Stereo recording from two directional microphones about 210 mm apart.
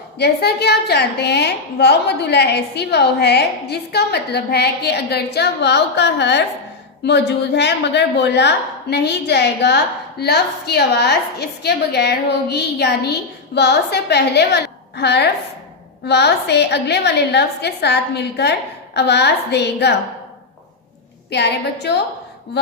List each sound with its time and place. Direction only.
0.2 s a woman's voice: 50° left (ahead or behind)
21.2 s a woman's voice: 55° left (ahead or behind)